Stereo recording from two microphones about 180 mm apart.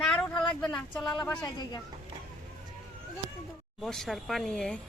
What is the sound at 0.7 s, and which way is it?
Speech, centre (ahead or behind).